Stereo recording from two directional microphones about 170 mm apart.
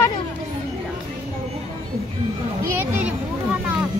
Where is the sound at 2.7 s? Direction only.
10° right (ahead or behind).